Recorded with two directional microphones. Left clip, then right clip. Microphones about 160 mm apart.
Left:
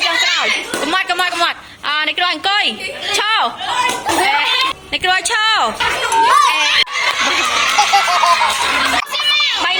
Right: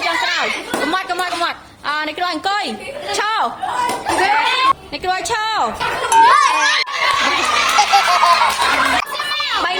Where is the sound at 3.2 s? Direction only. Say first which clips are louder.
Left 2 dB; 5° right (ahead or behind).